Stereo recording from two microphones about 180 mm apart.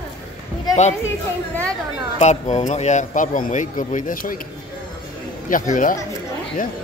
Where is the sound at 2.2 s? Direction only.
40° left (ahead or behind).